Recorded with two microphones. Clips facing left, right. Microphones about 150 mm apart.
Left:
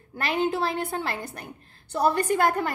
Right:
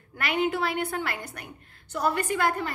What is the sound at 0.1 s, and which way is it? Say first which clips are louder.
A woman's voice: left 1 dB; 30° left (ahead or behind).